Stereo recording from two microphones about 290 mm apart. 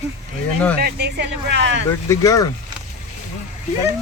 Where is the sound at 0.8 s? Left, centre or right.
Right.